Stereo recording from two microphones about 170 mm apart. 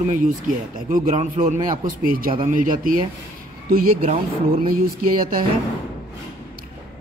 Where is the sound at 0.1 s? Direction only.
50° right (ahead or behind).